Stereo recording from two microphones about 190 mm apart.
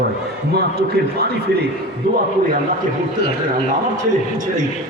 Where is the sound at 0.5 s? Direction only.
55° right (ahead or behind).